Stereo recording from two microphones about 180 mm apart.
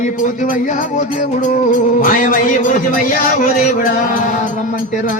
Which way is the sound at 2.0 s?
50° left (ahead or behind).